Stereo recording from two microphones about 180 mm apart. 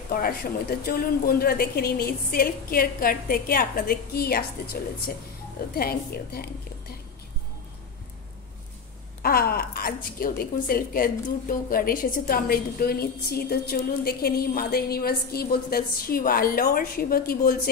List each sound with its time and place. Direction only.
0.1 s a woman's voice: 55° left (ahead or behind)
5.8 s a woman's voice: 60° left (ahead or behind)
9.2 s a woman's voice: 60° left (ahead or behind)